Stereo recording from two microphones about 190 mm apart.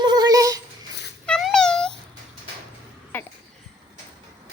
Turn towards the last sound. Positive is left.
turn(degrees=10)  # may be behind; listen again after turning